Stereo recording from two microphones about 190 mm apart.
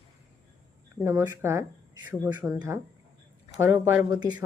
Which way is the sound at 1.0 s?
15° right (ahead or behind).